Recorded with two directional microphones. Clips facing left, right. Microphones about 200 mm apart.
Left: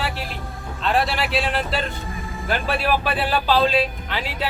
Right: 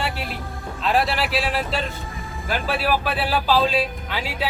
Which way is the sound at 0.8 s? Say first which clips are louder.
Even; centre (ahead or behind).